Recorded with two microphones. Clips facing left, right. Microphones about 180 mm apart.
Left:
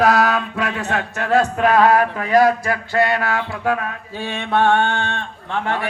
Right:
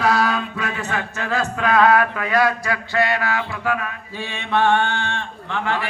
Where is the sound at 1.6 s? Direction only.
40° left (ahead or behind).